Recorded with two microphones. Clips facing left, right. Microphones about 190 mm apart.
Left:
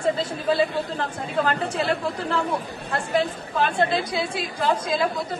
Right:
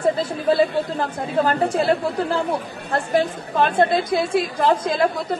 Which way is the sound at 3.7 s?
45° right (ahead or behind).